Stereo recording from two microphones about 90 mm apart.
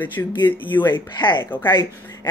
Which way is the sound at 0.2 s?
30° left (ahead or behind).